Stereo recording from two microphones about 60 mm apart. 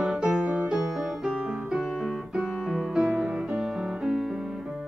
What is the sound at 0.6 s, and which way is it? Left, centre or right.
Music, centre.